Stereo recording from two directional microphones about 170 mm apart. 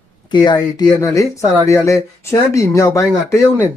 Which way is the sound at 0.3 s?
25° left (ahead or behind).